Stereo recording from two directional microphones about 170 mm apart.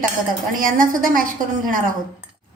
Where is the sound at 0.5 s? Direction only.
55° right (ahead or behind).